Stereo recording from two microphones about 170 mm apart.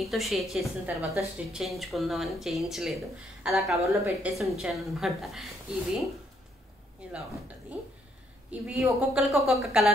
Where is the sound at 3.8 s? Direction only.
15° right (ahead or behind).